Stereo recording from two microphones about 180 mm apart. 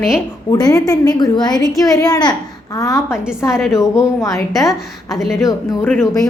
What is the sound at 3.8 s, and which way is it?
A woman's voice, 15° left (ahead or behind).